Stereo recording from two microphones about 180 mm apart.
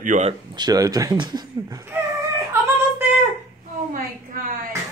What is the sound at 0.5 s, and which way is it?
Speech, 20° right (ahead or behind).